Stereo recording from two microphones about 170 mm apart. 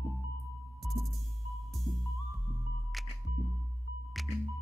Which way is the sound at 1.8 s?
Centre (ahead or behind).